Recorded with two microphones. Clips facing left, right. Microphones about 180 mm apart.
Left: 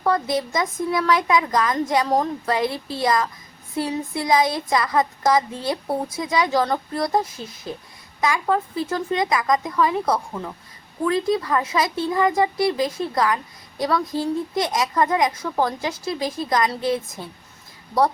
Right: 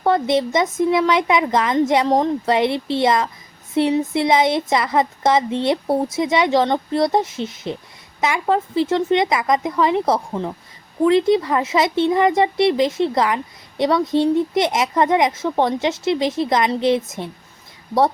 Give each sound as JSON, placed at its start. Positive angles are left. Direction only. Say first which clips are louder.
{"t": 0.0, "sound": "speech", "louder": "right 4 dB", "side_deg": -25}